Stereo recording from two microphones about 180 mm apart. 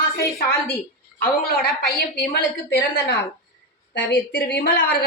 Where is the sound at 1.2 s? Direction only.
55° left (ahead or behind).